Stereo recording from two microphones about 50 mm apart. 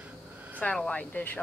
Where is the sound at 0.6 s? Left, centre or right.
Left.